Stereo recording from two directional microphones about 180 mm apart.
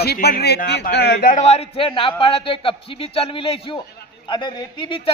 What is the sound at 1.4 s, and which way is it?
A man's voice, 35° left (ahead or behind).